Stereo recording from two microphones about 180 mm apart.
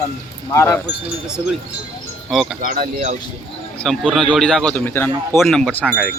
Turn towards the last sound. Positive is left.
turn(degrees=0)  # may be behind; listen again after turning